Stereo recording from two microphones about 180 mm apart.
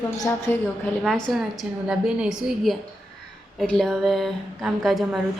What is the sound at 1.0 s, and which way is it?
A woman's voice, centre (ahead or behind).